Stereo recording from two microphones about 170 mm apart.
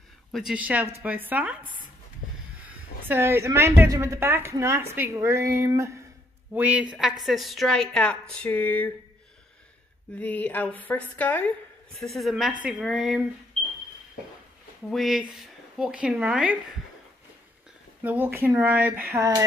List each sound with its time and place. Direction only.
0.3 s a woman's voice: centre (ahead or behind)
3.1 s a woman's voice: 15° right (ahead or behind); by 8.9 s 10° left (ahead or behind)
10.1 s a woman's voice: 10° left (ahead or behind)
14.9 s a woman's voice: centre (ahead or behind)
18.0 s a woman's voice: 10° right (ahead or behind)